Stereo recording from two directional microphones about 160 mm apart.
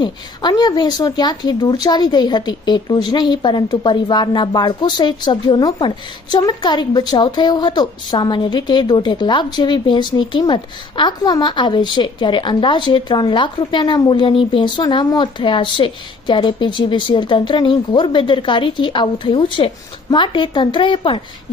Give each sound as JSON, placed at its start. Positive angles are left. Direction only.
{"t": 0.0, "sound": "a woman's voice", "side_deg": 25}